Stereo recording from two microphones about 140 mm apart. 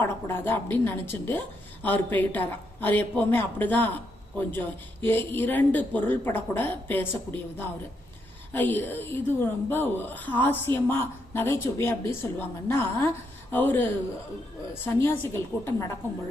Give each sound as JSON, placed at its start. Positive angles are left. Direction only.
{"t": 0.0, "sound": "speech", "side_deg": 15}